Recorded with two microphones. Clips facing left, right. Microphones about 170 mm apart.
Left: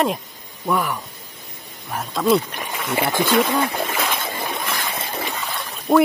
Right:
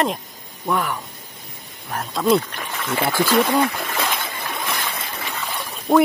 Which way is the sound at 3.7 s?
20° left (ahead or behind).